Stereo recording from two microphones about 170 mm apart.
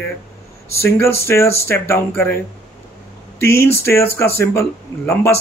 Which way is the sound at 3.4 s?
15° left (ahead or behind).